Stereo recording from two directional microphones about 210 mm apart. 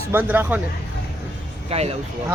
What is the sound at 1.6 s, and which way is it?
Speech, 30° right (ahead or behind).